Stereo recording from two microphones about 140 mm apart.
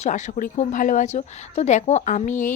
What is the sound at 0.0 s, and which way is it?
A woman's voice, 60° left (ahead or behind).